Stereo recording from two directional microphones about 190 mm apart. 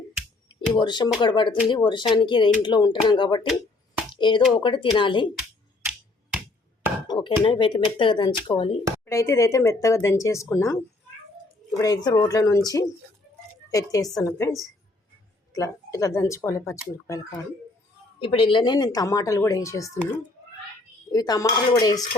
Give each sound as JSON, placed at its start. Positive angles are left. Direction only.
{"t": 0.4, "sound": "speech", "side_deg": 25}
{"t": 5.3, "sound": "a sound", "side_deg": -5}
{"t": 7.1, "sound": "a sound", "side_deg": 25}
{"t": 7.4, "sound": "speech", "side_deg": 25}
{"t": 9.0, "sound": "speech", "side_deg": 15}
{"t": 15.5, "sound": "speech", "side_deg": 15}
{"t": 18.2, "sound": "speech", "side_deg": 25}
{"t": 21.1, "sound": "speech", "side_deg": 20}